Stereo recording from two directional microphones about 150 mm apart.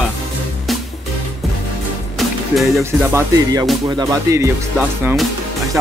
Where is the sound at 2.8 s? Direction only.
20° right (ahead or behind).